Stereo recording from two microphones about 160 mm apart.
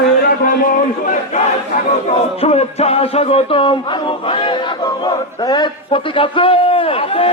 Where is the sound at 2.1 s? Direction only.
40° left (ahead or behind).